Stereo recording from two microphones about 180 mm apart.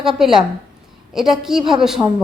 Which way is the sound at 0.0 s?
5° right (ahead or behind).